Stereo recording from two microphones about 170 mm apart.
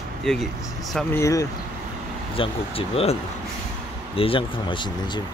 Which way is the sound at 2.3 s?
35° left (ahead or behind).